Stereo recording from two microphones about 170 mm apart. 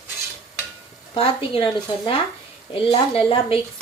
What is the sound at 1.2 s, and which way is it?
Speech, 35° left (ahead or behind).